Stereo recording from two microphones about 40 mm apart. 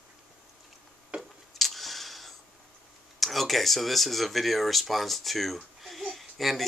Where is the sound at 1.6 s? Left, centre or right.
Centre.